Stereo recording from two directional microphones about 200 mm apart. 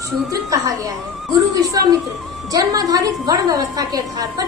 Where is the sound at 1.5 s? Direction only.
15° right (ahead or behind).